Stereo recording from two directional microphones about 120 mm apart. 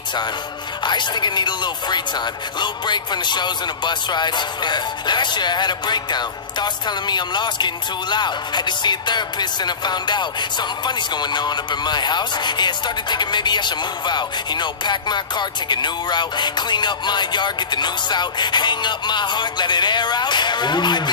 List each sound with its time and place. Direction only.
0.8 s speech: 40° left (ahead or behind)